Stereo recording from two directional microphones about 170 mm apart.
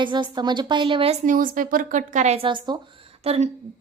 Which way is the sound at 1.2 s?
55° right (ahead or behind).